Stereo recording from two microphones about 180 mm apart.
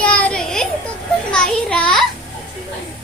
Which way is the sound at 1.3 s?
5° left (ahead or behind).